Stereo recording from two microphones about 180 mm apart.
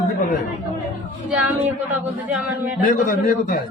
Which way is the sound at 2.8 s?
55° left (ahead or behind).